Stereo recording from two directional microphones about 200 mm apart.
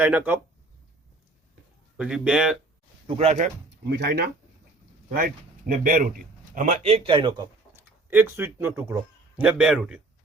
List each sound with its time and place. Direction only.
0.0 s speech: 10° right (ahead or behind)
2.0 s speech: 5° right (ahead or behind)
3.2 s a man's voice: 35° right (ahead or behind)
3.8 s speech: 55° right (ahead or behind)
5.1 s a man's voice: 45° right (ahead or behind); by 7.4 s 25° right (ahead or behind)
7.8 s speech: 10° right (ahead or behind)